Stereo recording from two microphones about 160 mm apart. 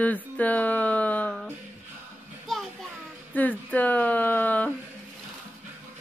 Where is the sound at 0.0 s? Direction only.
10° left (ahead or behind).